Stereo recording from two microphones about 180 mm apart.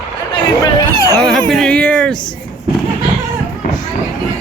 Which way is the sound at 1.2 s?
Centre (ahead or behind).